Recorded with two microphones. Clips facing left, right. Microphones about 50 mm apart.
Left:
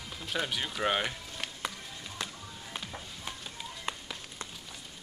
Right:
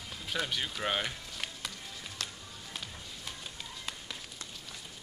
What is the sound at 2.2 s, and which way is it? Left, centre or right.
Music, centre.